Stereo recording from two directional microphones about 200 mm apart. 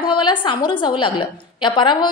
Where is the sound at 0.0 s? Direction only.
25° left (ahead or behind).